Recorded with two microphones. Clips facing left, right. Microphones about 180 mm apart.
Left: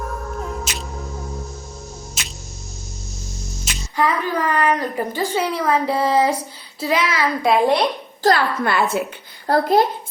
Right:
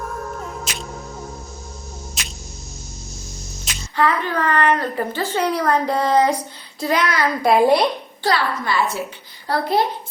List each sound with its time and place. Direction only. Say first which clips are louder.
0.7 s music: even; centre (ahead or behind)
2.2 s music: even; centre (ahead or behind)
3.6 s speech: right 1 dB; 10° left (ahead or behind)
8.2 s a woman's voice: left 4 dB; 45° left (ahead or behind)
9.5 s a woman's voice: left 4 dB; 45° left (ahead or behind)